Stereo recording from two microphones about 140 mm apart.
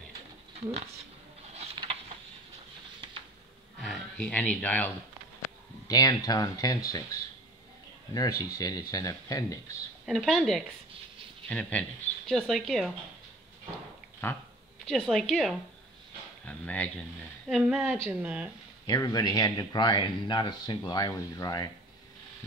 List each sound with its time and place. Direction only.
0.6 s speech: 45° right (ahead or behind)
3.8 s speech: 5° left (ahead or behind)
5.9 s speech: 25° left (ahead or behind)
8.1 s speech: 25° left (ahead or behind)
10.0 s a woman's voice: centre (ahead or behind)
14.2 s speech: 15° left (ahead or behind)
14.9 s a woman's voice: centre (ahead or behind)
17.5 s a woman's voice: centre (ahead or behind)
18.9 s speech: 30° left (ahead or behind)